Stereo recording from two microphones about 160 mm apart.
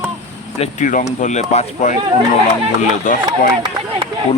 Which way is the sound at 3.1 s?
55° left (ahead or behind).